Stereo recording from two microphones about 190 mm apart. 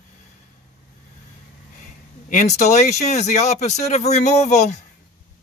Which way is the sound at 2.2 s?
40° left (ahead or behind).